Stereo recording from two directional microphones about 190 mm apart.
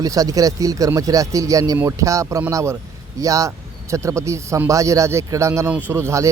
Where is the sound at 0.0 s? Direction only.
20° right (ahead or behind).